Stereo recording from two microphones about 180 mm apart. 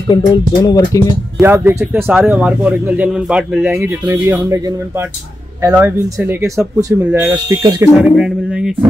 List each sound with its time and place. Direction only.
0.1 s music: 20° left (ahead or behind)
1.4 s speech: 10° right (ahead or behind)
5.6 s speech: 10° right (ahead or behind)
8.0 s speech: 5° right (ahead or behind)